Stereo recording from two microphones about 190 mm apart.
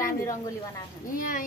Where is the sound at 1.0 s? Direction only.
45° left (ahead or behind).